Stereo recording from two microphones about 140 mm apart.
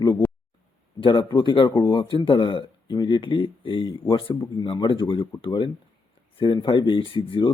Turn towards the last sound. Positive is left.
turn(degrees=35)  # may be behind; listen again after turning